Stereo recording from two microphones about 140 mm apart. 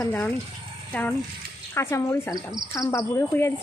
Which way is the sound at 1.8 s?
20° left (ahead or behind).